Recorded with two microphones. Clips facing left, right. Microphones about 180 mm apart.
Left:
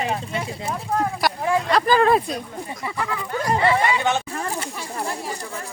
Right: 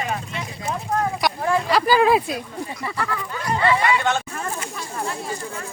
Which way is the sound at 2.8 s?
15° left (ahead or behind).